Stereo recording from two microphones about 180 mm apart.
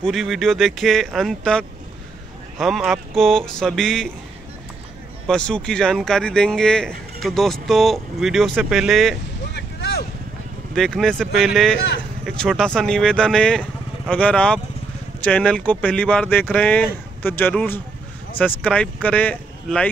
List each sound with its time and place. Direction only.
0.0 s speech: centre (ahead or behind)
5.2 s speech: 5° left (ahead or behind)
9.5 s vehicle: 70° left (ahead or behind)
10.7 s speech: centre (ahead or behind)